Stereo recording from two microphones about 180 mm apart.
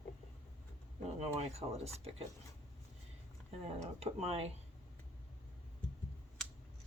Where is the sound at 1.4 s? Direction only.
35° right (ahead or behind).